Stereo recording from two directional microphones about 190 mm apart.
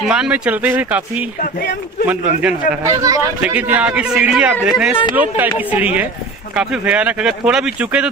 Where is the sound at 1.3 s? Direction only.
50° left (ahead or behind).